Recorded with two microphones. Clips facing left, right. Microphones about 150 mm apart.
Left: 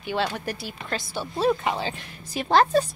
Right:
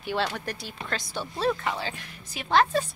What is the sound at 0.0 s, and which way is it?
A woman's voice, centre (ahead or behind).